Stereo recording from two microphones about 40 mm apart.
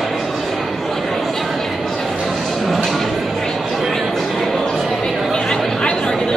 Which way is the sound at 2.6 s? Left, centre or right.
Centre.